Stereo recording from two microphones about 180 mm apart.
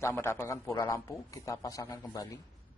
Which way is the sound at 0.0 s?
15° left (ahead or behind).